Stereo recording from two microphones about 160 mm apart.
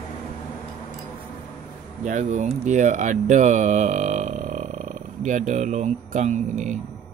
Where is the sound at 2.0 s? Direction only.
50° right (ahead or behind).